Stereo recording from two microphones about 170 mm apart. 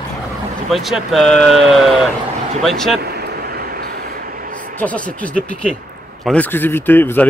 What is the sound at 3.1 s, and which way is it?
Vehicle, 65° right (ahead or behind).